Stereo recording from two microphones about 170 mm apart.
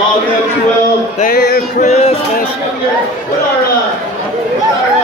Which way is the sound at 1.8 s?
40° left (ahead or behind).